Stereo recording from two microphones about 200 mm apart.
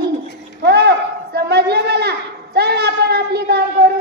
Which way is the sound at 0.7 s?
55° right (ahead or behind).